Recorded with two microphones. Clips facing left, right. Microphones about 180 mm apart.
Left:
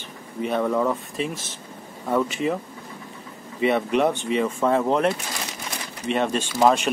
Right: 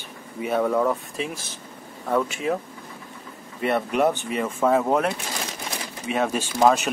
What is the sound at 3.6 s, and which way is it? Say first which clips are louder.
Speech: left 1 dB; centre (ahead or behind).